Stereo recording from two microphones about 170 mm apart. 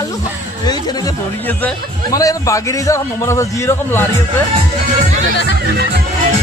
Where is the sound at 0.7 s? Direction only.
25° left (ahead or behind).